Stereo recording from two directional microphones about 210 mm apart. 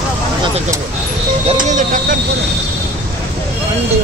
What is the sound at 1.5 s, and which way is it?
Speech, 40° right (ahead or behind).